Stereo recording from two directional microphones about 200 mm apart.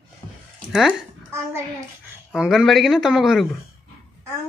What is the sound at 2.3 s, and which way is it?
Speech, centre (ahead or behind).